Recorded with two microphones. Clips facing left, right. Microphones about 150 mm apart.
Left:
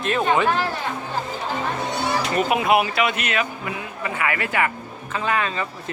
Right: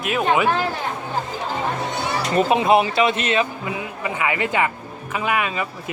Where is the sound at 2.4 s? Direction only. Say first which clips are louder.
Right 4 dB; 30° right (ahead or behind).